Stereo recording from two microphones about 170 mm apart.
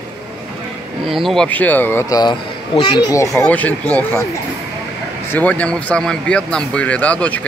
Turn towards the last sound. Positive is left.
turn(degrees=10)  # may be behind; listen again after turning